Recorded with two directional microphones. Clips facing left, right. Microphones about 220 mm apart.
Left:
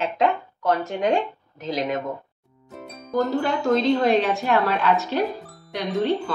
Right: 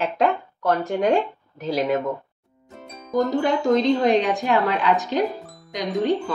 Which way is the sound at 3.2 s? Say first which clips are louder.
Right 2 dB; 15° right (ahead or behind).